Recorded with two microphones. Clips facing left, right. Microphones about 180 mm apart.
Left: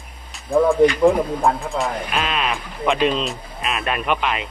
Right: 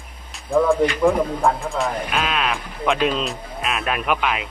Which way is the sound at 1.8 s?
Centre (ahead or behind).